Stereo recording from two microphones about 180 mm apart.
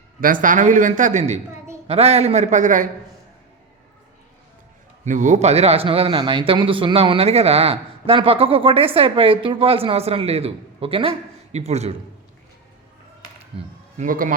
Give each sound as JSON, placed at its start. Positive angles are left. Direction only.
{"t": 0.2, "sound": "a man's voice", "side_deg": -50}
{"t": 5.0, "sound": "a man's voice", "side_deg": -45}
{"t": 14.0, "sound": "a man's voice", "side_deg": -50}